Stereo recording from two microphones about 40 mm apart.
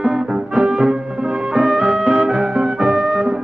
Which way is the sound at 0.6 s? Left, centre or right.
Centre.